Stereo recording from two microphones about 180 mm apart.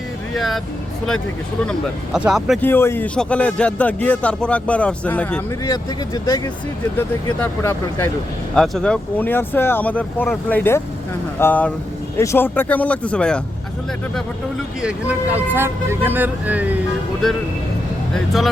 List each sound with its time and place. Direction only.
0.3 s speech: centre (ahead or behind)
2.1 s speech: 5° right (ahead or behind)
2.6 s speech: 10° left (ahead or behind)
6.2 s speech: 20° left (ahead or behind)
8.5 s speech: 5° left (ahead or behind)
14.8 s speech: 5° right (ahead or behind)
17.2 s speech: centre (ahead or behind)